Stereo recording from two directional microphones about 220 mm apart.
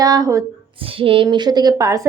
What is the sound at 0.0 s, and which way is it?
A woman's voice, 15° right (ahead or behind).